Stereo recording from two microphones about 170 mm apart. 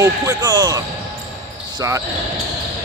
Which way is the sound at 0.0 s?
20° right (ahead or behind).